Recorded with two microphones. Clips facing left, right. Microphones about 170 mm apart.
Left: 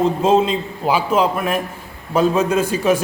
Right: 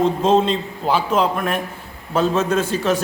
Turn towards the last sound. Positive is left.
turn(degrees=10)  # may be behind; listen again after turning